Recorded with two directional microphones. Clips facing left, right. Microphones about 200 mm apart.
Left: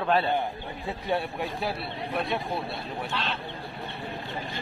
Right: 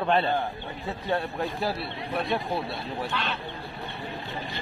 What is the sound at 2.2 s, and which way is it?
Speech, centre (ahead or behind).